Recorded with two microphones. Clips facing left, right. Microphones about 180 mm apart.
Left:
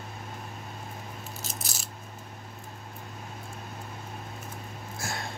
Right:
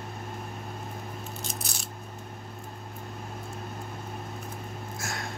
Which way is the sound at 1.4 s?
Centre (ahead or behind).